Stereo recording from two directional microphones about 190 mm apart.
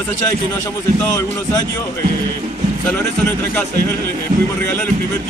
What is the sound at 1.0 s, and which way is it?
Speech, 15° left (ahead or behind).